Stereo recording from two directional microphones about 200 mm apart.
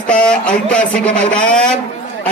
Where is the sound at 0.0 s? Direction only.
5° left (ahead or behind).